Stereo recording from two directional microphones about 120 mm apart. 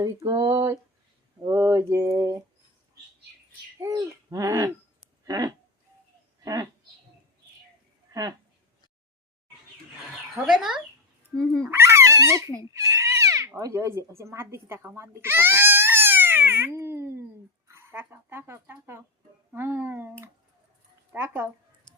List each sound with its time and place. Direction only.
0.0 s a sound: 30° right (ahead or behind)
1.4 s mantra: 25° right (ahead or behind)
3.8 s speech: 25° right (ahead or behind)
4.3 s a sound: 25° right (ahead or behind)
6.4 s speech: 30° right (ahead or behind)
8.1 s speech: 30° right (ahead or behind)
10.4 s speech: 5° right (ahead or behind)
11.6 s speech: 20° right (ahead or behind)
12.7 s a sound: 25° right (ahead or behind)
13.6 s speech: 25° right (ahead or behind)
19.5 s a sound: 20° right (ahead or behind)
21.1 s speech: 15° right (ahead or behind)